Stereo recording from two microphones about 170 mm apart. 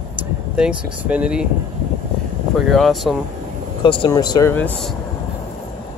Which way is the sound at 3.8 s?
30° left (ahead or behind).